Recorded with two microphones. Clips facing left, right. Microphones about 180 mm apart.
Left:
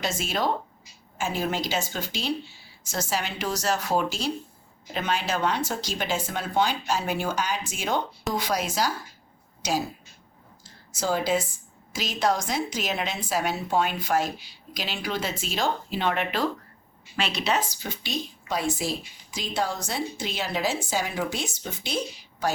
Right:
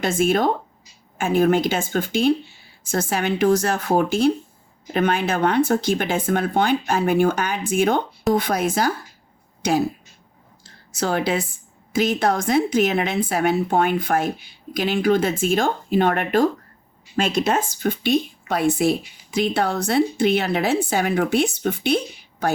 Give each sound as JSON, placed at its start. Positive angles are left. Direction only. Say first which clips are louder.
{"t": 0.0, "sound": "a woman's voice", "louder": "right 8 dB", "side_deg": -55}
{"t": 10.6, "sound": "a sound", "louder": "right 5 dB", "side_deg": -65}
{"t": 11.9, "sound": "a woman's voice", "louder": "right 6 dB", "side_deg": -55}